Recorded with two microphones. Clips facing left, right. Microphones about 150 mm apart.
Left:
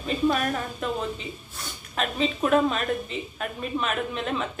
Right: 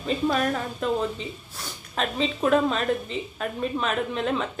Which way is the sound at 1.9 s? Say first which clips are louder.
Even; 35° right (ahead or behind).